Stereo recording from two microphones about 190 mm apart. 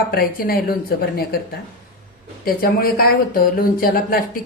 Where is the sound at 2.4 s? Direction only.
50° left (ahead or behind).